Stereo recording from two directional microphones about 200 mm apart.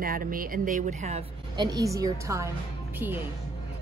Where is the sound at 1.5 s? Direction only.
20° right (ahead or behind).